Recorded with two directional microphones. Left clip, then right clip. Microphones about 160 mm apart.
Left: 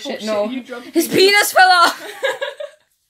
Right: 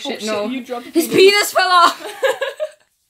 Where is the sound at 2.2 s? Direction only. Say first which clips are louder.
Right 3 dB; 75° right (ahead or behind).